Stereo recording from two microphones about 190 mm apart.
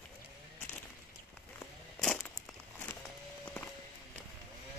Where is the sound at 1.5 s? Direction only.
10° left (ahead or behind).